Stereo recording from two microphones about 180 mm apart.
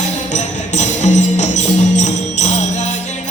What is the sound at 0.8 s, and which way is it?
Music, 40° left (ahead or behind).